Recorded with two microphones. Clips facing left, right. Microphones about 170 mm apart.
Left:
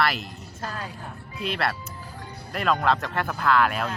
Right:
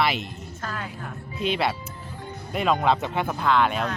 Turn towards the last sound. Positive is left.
turn(degrees=5)  # may be behind; listen again after turning